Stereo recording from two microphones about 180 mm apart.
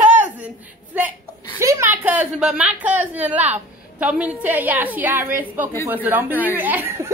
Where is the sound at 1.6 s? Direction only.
15° right (ahead or behind).